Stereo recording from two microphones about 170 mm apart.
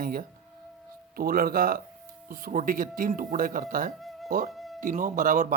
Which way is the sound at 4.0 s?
Centre (ahead or behind).